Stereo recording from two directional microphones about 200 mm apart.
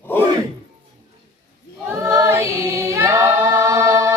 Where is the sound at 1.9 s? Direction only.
15° right (ahead or behind).